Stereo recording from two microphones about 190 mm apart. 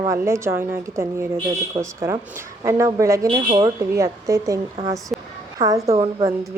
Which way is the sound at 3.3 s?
25° right (ahead or behind).